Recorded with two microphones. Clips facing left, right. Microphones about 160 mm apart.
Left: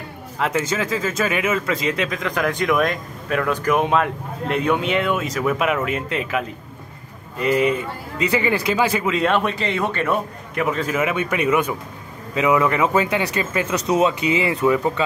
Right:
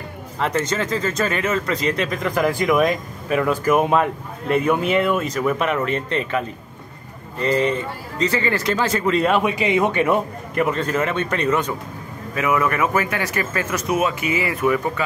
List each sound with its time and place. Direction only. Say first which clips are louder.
0.4 s a man's voice: even; 5° left (ahead or behind)
9.4 s speech: right 4 dB; 10° right (ahead or behind)
10.5 s a man's voice: right 1 dB; centre (ahead or behind); by 15.0 s 20° left (ahead or behind)